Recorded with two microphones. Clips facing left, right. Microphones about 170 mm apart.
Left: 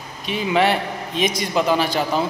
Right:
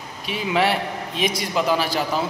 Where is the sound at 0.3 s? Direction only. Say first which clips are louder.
Left 3 dB; 5° right (ahead or behind).